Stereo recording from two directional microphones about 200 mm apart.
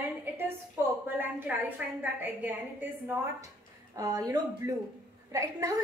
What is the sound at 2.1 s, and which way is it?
Speech, 10° right (ahead or behind).